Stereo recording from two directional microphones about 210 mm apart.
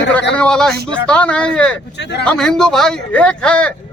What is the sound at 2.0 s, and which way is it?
Speech, 55° left (ahead or behind).